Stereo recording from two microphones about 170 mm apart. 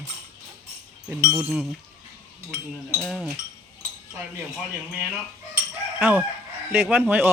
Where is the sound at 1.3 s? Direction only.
10° right (ahead or behind).